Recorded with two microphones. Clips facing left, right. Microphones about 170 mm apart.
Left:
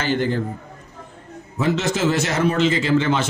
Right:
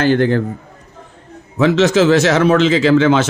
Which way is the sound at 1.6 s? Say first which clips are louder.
Right 8 dB; 90° right.